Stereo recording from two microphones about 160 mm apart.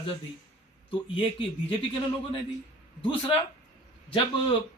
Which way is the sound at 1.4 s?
30° left (ahead or behind).